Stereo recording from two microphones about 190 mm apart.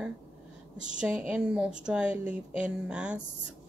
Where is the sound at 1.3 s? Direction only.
5° right (ahead or behind).